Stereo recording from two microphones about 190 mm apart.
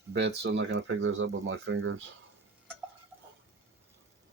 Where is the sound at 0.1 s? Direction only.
65° right (ahead or behind); by 2.0 s 90° right.